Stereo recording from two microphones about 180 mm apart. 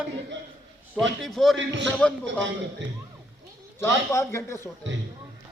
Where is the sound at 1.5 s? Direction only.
90° right.